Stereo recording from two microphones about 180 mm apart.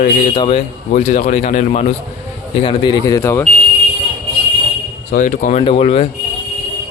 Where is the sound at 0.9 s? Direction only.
45° left (ahead or behind).